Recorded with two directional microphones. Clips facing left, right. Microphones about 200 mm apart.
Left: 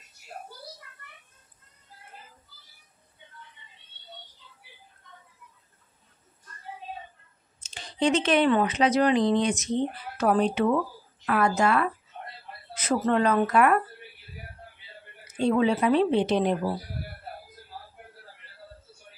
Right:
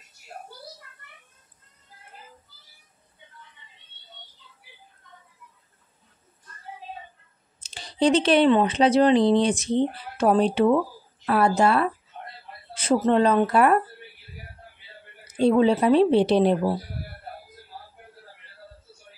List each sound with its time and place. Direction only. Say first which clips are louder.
7.6 s speech: right 4 dB; 35° right (ahead or behind)
15.3 s speech: right 4 dB; 35° right (ahead or behind)